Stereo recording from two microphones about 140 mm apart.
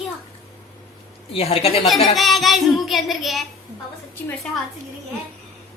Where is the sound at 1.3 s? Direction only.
45° left (ahead or behind).